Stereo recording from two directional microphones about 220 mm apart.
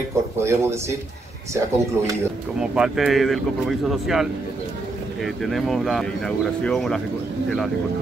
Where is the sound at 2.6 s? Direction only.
5° right (ahead or behind).